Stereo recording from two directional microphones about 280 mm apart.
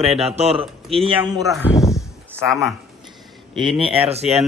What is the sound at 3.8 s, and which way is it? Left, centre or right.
Speech, right.